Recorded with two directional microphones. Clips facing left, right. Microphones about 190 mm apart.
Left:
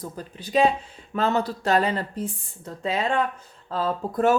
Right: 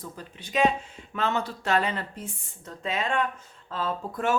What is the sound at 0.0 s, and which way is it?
Speech, 35° left (ahead or behind).